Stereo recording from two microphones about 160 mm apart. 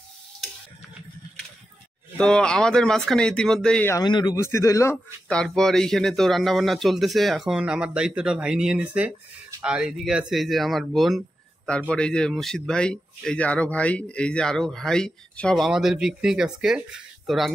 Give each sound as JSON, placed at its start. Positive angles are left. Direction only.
{"t": 2.1, "sound": "speech", "side_deg": 5}
{"t": 3.9, "sound": "speech", "side_deg": 25}
{"t": 4.9, "sound": "speech", "side_deg": 5}